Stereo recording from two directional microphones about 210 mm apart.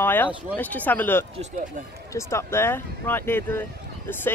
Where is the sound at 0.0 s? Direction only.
10° left (ahead or behind).